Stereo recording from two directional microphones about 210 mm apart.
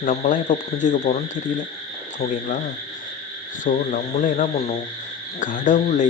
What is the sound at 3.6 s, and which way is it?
Speech, 40° left (ahead or behind).